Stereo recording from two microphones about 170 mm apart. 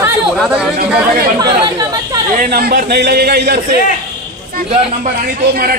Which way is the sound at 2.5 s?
60° right (ahead or behind).